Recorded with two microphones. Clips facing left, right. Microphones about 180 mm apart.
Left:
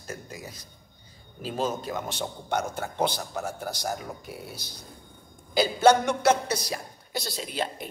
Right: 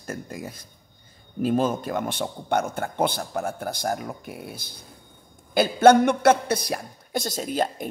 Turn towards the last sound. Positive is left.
turn(degrees=-45)  # may be behind; listen again after turning